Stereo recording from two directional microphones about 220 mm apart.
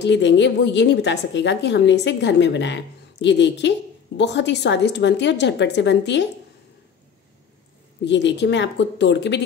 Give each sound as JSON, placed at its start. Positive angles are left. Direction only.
{"t": 0.0, "sound": "a woman's voice", "side_deg": 55}
{"t": 8.0, "sound": "a woman's voice", "side_deg": 55}